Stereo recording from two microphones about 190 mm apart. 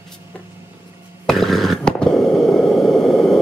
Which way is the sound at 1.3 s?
Centre (ahead or behind).